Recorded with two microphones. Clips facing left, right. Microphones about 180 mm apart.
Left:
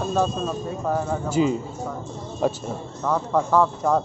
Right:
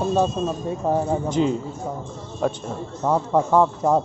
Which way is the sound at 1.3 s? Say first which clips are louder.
Even; 5° left (ahead or behind).